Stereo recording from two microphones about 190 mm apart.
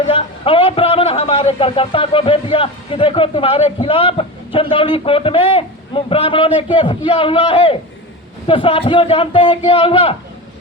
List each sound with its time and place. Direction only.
0.1 s a man's voice: 25° left (ahead or behind)